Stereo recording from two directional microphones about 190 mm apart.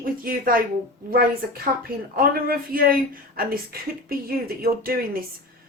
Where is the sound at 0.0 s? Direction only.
50° right (ahead or behind).